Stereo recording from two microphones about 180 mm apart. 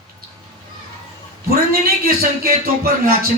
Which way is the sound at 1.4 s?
55° right (ahead or behind).